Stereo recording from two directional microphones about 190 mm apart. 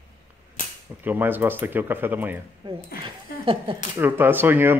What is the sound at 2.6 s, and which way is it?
Speech, 25° right (ahead or behind).